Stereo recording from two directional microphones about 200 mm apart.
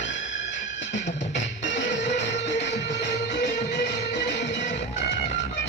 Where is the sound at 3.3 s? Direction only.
60° left (ahead or behind).